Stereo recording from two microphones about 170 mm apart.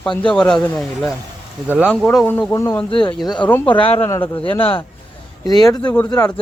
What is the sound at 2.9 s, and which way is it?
Speech, 30° left (ahead or behind).